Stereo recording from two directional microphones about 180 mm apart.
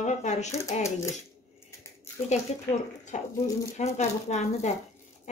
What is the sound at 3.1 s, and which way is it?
Speech, 45° left (ahead or behind).